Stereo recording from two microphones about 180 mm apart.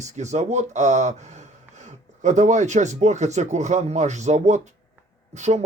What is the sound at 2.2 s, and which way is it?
A man's voice, 40° right (ahead or behind).